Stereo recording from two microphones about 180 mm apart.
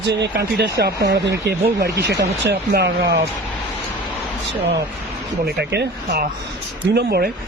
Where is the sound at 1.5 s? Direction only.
60° right (ahead or behind).